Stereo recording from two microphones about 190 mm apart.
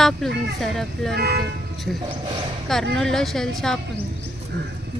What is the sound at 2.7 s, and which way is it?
Speech, centre (ahead or behind).